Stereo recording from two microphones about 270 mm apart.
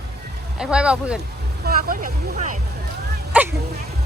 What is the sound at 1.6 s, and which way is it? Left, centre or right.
Speech, right.